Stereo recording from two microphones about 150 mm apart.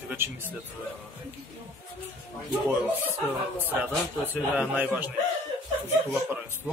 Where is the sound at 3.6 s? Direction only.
10° left (ahead or behind).